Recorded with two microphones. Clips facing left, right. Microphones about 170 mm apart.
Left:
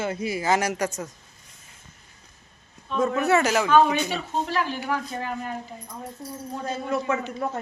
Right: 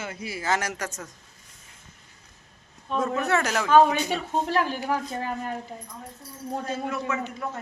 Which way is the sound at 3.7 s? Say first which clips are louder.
Right 4 dB; 40° right (ahead or behind).